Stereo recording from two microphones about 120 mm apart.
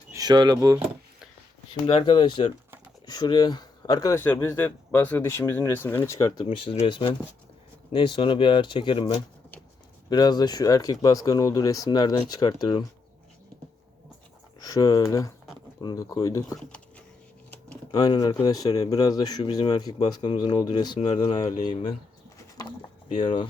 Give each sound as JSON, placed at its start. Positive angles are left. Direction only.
{"t": 0.1, "sound": "speech", "side_deg": -35}
{"t": 1.7, "sound": "speech", "side_deg": 50}
{"t": 4.2, "sound": "speech", "side_deg": 20}
{"t": 6.4, "sound": "speech", "side_deg": 50}
{"t": 10.1, "sound": "speech", "side_deg": 35}
{"t": 14.6, "sound": "speech", "side_deg": 30}
{"t": 17.9, "sound": "speech", "side_deg": 35}
{"t": 21.1, "sound": "speech", "side_deg": 50}
{"t": 23.0, "sound": "speech", "side_deg": 45}